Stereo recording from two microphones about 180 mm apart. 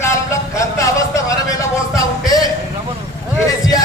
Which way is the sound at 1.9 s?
20° left (ahead or behind).